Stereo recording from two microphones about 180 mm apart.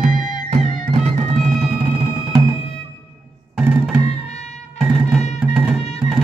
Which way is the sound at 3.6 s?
10° right (ahead or behind).